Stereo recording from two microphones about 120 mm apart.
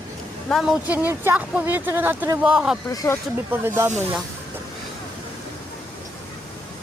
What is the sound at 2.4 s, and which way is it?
Speech, 5° right (ahead or behind).